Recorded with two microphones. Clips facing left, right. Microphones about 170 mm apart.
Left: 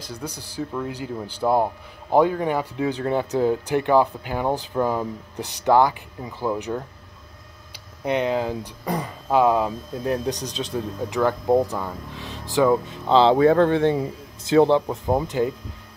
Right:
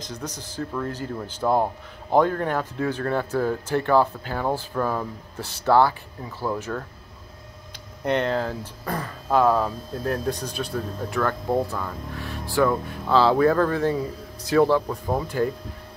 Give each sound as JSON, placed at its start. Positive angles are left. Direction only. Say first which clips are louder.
{"t": 0.0, "sound": "speech", "louder": "even", "side_deg": 10}
{"t": 8.0, "sound": "speech", "louder": "left 1 dB", "side_deg": 10}